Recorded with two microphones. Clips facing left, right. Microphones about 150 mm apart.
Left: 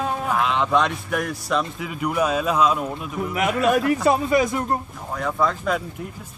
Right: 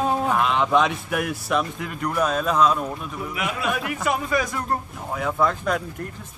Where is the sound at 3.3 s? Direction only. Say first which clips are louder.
Left 8 dB; 45° left (ahead or behind).